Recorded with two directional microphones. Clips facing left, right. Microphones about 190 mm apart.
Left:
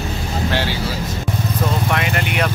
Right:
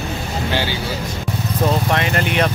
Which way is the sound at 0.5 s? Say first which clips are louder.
Right 1 dB; centre (ahead or behind).